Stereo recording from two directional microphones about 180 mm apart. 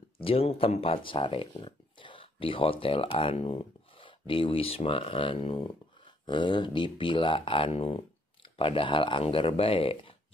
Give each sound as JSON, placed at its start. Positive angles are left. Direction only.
{"t": 0.2, "sound": "speech", "side_deg": 30}